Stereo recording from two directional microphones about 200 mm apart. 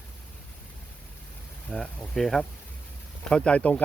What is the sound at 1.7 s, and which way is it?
Speech, centre (ahead or behind).